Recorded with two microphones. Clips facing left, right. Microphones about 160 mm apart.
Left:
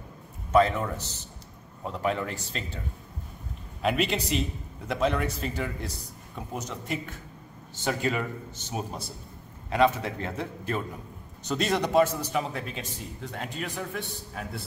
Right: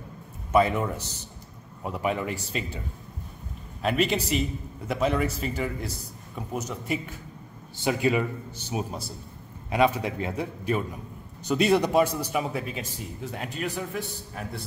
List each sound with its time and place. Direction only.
0.5 s a man's voice: 10° right (ahead or behind)
3.8 s a man's voice: centre (ahead or behind)